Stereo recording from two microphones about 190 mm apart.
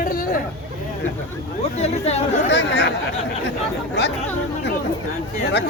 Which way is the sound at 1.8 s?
35° left (ahead or behind).